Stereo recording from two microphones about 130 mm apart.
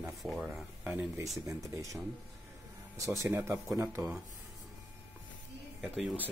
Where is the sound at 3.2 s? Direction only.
20° right (ahead or behind).